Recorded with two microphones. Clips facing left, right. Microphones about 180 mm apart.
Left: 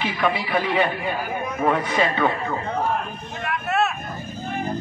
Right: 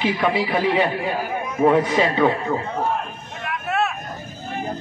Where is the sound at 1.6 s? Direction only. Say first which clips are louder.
Right 5 dB; 20° right (ahead or behind).